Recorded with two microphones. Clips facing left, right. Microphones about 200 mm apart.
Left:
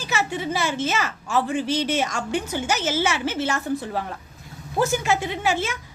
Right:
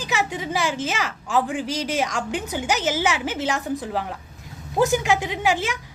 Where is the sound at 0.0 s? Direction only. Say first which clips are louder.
Even; 15° right (ahead or behind).